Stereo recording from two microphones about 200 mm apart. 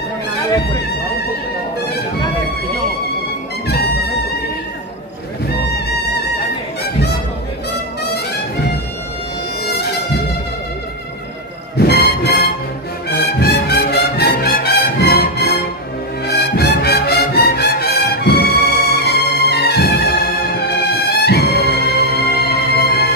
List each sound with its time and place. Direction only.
11.7 s music: 55° left (ahead or behind)